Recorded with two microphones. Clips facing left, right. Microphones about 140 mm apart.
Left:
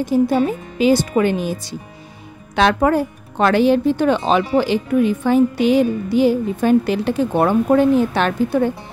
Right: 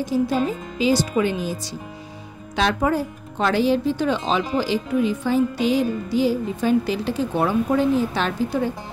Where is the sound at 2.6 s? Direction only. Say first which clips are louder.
Left 5 dB; 65° left (ahead or behind).